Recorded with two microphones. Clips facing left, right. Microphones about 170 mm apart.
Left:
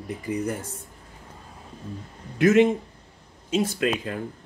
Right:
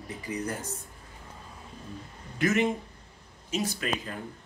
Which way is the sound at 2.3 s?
65° left (ahead or behind).